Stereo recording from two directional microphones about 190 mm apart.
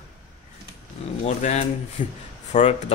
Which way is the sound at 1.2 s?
35° left (ahead or behind).